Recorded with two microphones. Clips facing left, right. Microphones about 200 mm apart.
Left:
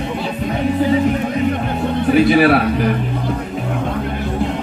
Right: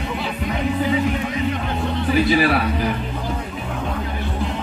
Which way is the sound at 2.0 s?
55° left (ahead or behind).